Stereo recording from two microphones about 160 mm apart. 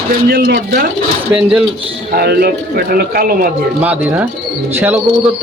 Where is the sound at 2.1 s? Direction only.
75° right (ahead or behind).